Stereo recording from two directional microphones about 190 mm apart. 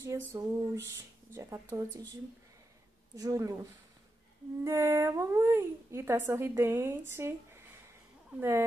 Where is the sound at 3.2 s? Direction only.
15° right (ahead or behind).